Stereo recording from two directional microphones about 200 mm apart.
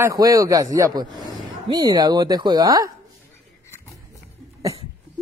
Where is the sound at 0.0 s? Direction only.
15° right (ahead or behind).